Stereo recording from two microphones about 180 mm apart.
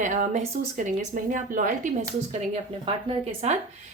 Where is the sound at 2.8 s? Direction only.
35° right (ahead or behind).